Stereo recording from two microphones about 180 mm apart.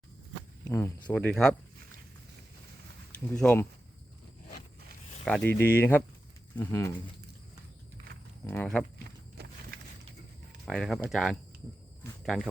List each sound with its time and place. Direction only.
0.6 s speech: 20° left (ahead or behind)
1.1 s speech: 5° left (ahead or behind)
3.3 s speech: 10° left (ahead or behind)
5.2 s speech: 5° left (ahead or behind)
8.4 s speech: 5° left (ahead or behind)
9.4 s a sound: 65° right (ahead or behind)
10.7 s speech: centre (ahead or behind)